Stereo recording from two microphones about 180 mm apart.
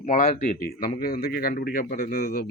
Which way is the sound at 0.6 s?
55° left (ahead or behind).